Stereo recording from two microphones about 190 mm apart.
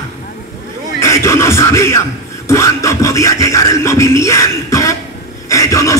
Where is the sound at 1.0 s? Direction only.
15° left (ahead or behind).